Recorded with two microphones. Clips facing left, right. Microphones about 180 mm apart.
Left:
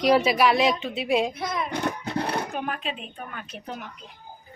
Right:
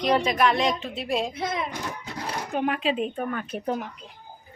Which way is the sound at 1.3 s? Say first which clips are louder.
Right 1 dB; 25° right (ahead or behind).